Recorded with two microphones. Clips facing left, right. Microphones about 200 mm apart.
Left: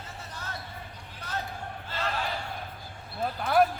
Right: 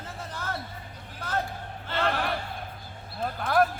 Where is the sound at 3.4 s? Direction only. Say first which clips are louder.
Left 1 dB; 5° left (ahead or behind).